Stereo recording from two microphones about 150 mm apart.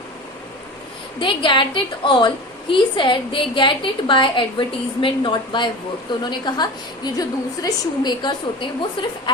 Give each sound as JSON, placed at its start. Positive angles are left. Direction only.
{"t": 1.2, "sound": "a woman's voice", "side_deg": 35}